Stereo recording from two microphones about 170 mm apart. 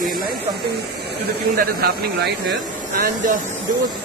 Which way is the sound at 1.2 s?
60° right (ahead or behind).